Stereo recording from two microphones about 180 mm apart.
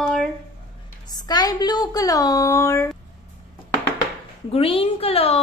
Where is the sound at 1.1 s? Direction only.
20° left (ahead or behind).